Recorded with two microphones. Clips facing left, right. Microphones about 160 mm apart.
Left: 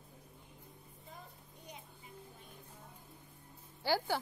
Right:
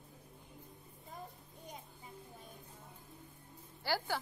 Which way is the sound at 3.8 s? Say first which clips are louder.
Left 3 dB; 15° left (ahead or behind).